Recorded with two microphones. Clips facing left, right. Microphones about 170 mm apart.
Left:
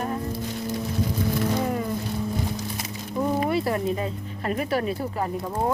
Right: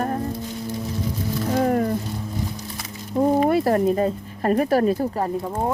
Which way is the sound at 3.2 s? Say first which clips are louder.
Right 6 dB; 40° right (ahead or behind).